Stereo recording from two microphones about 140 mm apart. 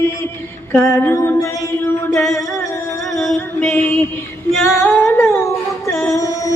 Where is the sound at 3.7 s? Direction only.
20° left (ahead or behind).